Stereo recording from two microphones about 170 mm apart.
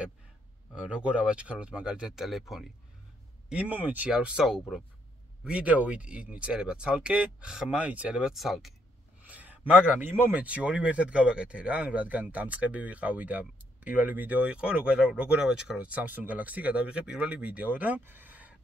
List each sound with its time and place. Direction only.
0.7 s speech: 5° right (ahead or behind)